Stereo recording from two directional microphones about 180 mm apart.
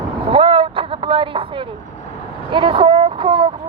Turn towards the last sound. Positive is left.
turn(degrees=-25)  # may be behind; listen again after turning